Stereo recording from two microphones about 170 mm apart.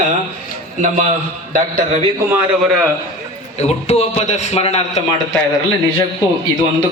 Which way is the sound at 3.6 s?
40° left (ahead or behind).